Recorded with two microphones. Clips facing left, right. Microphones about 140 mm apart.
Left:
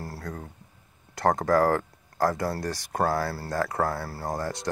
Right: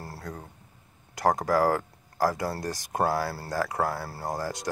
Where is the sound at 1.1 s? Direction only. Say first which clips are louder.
Left 2 dB; 15° right (ahead or behind).